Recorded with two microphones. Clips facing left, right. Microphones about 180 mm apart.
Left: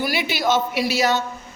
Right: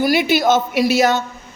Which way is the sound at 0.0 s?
45° right (ahead or behind).